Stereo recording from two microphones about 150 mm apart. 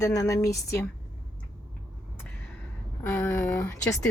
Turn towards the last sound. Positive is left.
turn(degrees=20)  # may be behind; listen again after turning